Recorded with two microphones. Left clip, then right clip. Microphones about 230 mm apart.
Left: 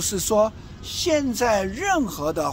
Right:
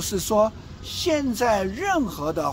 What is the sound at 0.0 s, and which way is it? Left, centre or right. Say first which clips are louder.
Speech: left 1 dB; centre.